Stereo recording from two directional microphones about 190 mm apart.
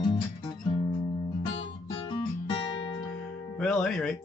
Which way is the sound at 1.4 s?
25° left (ahead or behind).